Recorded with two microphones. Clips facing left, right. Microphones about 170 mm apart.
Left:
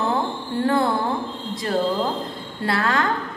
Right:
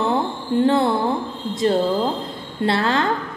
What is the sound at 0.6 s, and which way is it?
A woman's voice, 25° right (ahead or behind).